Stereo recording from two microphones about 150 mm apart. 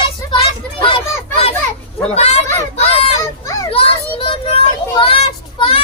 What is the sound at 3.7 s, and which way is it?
Children playing, 40° left (ahead or behind).